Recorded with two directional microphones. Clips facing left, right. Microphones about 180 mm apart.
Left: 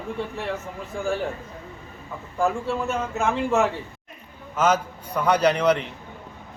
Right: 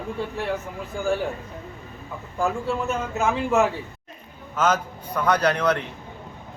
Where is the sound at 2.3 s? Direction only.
Centre (ahead or behind).